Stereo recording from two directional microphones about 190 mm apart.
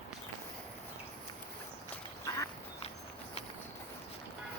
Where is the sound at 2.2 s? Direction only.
15° left (ahead or behind).